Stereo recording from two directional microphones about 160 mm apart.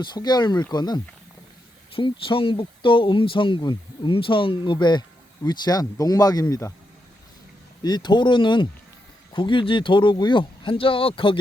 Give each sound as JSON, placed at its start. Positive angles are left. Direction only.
{"t": 0.0, "sound": "speech", "side_deg": 25}
{"t": 7.8, "sound": "speech", "side_deg": 25}